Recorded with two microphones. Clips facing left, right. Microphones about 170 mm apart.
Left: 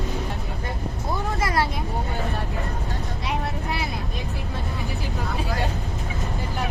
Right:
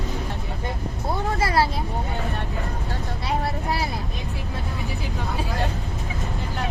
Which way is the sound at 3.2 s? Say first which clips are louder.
Right 3 dB; 35° right (ahead or behind).